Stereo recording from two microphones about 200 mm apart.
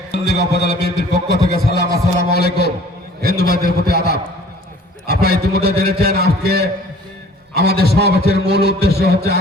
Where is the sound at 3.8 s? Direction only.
50° right (ahead or behind).